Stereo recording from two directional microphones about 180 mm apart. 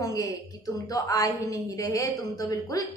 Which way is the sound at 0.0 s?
20° left (ahead or behind).